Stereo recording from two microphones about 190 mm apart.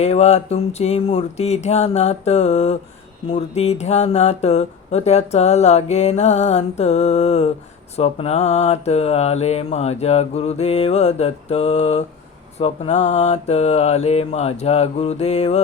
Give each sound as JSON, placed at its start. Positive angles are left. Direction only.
{"t": 0.0, "sound": "speech", "side_deg": 35}